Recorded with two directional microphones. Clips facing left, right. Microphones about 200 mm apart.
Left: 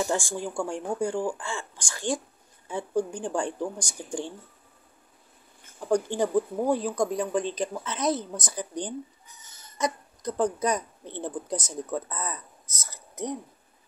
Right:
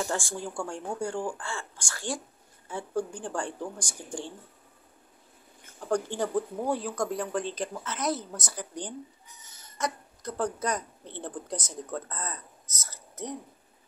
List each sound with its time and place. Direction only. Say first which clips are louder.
0.0 s speech: left 4 dB; 15° left (ahead or behind)
6.0 s a woman's voice: left 4 dB; 15° left (ahead or behind)